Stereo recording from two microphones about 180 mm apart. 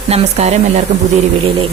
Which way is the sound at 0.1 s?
40° right (ahead or behind).